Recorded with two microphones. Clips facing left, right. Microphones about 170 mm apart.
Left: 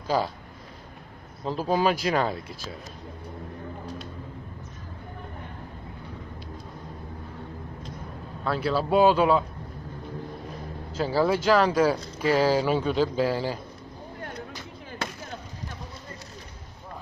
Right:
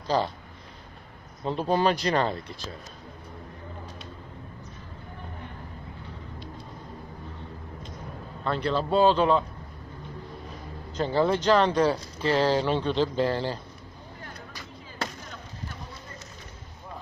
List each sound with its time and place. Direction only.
0.0 s speech: 5° left (ahead or behind)
1.4 s speech: 5° left (ahead or behind)
8.5 s speech: 5° left (ahead or behind)
10.9 s speech: 5° left (ahead or behind)